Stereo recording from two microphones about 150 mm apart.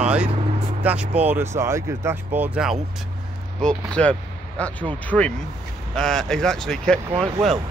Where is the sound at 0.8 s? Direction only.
10° right (ahead or behind).